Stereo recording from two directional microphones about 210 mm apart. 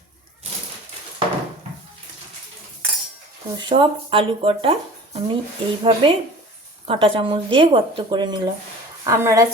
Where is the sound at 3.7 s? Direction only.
25° right (ahead or behind).